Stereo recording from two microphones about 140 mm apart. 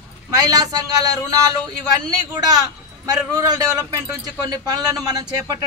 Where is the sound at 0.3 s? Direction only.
25° right (ahead or behind).